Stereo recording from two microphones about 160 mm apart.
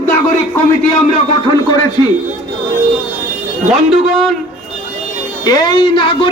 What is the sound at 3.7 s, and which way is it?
Speech, centre (ahead or behind).